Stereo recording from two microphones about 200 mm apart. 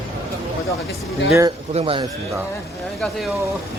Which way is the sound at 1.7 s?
30° right (ahead or behind).